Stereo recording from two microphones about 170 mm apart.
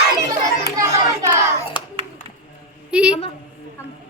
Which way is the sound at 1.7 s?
25° left (ahead or behind).